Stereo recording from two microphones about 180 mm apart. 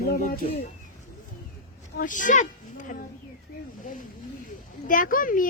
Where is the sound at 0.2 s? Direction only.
45° left (ahead or behind).